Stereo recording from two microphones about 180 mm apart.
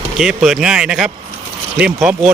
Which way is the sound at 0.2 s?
Centre (ahead or behind).